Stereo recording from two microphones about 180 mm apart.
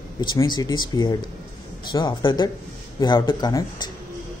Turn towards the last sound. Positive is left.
turn(degrees=20)  # may be behind; listen again after turning